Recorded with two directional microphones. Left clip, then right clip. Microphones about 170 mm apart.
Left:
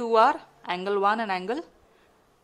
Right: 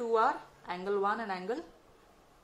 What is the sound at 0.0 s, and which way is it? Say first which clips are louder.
A woman's voice: left 8 dB; 45° left (ahead or behind).